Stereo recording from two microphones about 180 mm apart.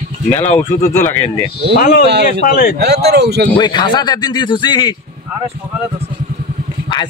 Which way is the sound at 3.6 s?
25° left (ahead or behind).